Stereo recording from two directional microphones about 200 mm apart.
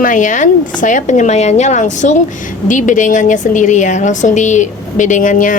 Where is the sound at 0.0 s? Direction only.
40° left (ahead or behind).